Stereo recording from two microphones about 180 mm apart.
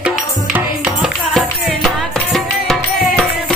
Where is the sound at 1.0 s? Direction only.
Centre (ahead or behind).